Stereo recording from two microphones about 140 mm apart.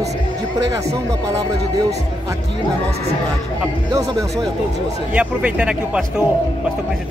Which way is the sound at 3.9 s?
25° right (ahead or behind).